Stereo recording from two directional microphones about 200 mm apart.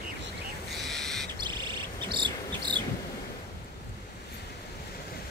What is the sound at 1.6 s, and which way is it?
Insect, 25° right (ahead or behind).